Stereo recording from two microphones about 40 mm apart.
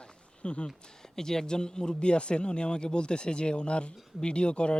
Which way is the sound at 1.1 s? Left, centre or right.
Centre.